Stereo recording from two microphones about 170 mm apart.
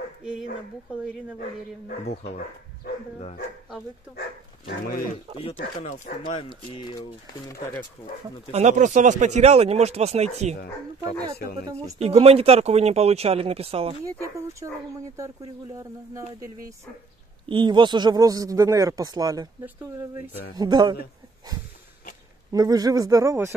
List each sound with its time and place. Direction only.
0.2 s speech: 5° right (ahead or behind)
4.6 s speech: 60° left (ahead or behind)
5.4 s speech: 40° left (ahead or behind); by 7.5 s 25° left (ahead or behind)
8.5 s speech: 40° right (ahead or behind)
12.0 s speech: 35° right (ahead or behind)
14.6 s a man's voice: 25° right (ahead or behind)
15.8 s a man's voice: 15° right (ahead or behind)
20.5 s a man's voice: 25° right (ahead or behind)
22.5 s a man's voice: 20° right (ahead or behind)